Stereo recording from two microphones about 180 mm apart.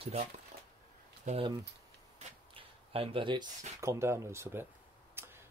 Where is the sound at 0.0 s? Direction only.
35° right (ahead or behind).